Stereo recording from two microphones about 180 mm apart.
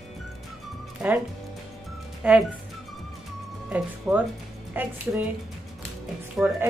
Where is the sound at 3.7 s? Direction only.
10° right (ahead or behind).